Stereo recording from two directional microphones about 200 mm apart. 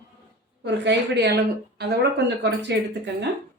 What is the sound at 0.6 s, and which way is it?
A woman's voice, 60° right (ahead or behind).